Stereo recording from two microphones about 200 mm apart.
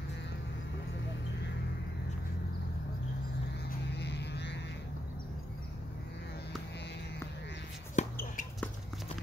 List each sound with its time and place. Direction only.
3.9 s music: 60° left (ahead or behind)
8.0 s basketball bounce: 35° left (ahead or behind)